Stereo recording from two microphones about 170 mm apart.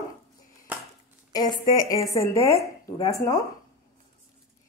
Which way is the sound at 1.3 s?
20° left (ahead or behind).